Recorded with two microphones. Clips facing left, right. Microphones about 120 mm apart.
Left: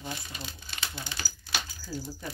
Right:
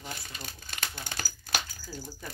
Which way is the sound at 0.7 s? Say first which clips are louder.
Right 1 dB; 50° right (ahead or behind).